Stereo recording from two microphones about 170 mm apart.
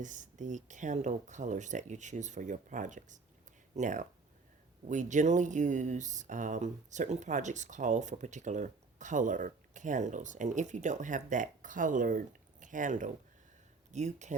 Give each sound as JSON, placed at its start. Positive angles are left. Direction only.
{"t": 0.0, "sound": "speech", "side_deg": -45}